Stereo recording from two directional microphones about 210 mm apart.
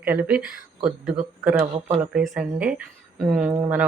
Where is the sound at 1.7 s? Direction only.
35° right (ahead or behind).